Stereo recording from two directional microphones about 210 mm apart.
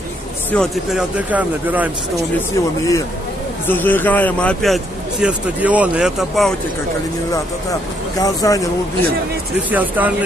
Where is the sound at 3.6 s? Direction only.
10° left (ahead or behind).